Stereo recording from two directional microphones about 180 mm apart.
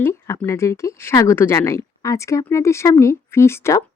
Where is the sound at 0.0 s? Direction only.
15° left (ahead or behind).